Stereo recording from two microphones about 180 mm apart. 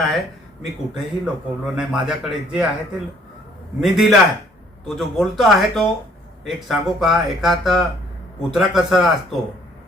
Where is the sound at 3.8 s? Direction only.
Centre (ahead or behind).